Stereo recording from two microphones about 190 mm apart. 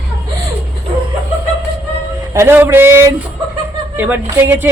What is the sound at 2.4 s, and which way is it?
Speech, 10° right (ahead or behind).